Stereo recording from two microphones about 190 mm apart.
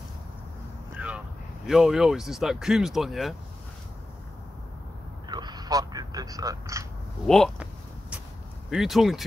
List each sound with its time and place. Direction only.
0.9 s a sound: 5° right (ahead or behind)
1.7 s speech: 5° right (ahead or behind)
5.3 s vehicle: 20° right (ahead or behind)
7.2 s speech: centre (ahead or behind)
8.6 s speech: centre (ahead or behind)